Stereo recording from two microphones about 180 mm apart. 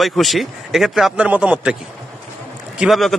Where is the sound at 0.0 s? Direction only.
Centre (ahead or behind).